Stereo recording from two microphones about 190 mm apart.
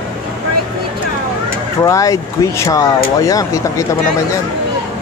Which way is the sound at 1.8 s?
15° left (ahead or behind).